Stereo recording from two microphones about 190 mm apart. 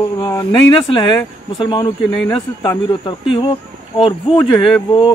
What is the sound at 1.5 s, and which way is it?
Speech, 25° left (ahead or behind).